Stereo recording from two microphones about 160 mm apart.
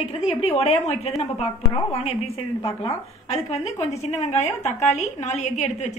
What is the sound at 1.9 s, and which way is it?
A woman's voice, 40° left (ahead or behind).